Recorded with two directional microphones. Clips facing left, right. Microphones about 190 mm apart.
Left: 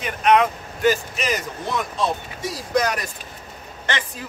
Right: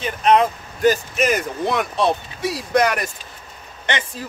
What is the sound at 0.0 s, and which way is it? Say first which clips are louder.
Speech: right 1 dB; 30° right (ahead or behind).